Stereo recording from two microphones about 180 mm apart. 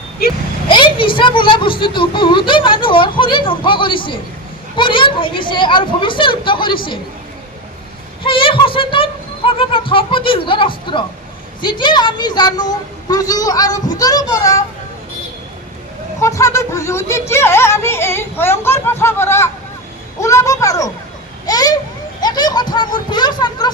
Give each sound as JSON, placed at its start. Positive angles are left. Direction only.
{"t": 0.2, "sound": "vehicle", "side_deg": 55}
{"t": 0.7, "sound": "speech", "side_deg": 25}
{"t": 8.2, "sound": "child singing", "side_deg": 30}
{"t": 9.5, "sound": "speech", "side_deg": 30}
{"t": 16.2, "sound": "speech", "side_deg": 15}
{"t": 21.4, "sound": "a sound", "side_deg": 20}
{"t": 22.2, "sound": "a child's voice", "side_deg": 25}